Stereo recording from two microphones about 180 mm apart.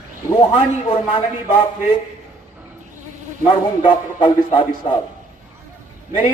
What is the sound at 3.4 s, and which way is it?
A man's voice, 25° left (ahead or behind).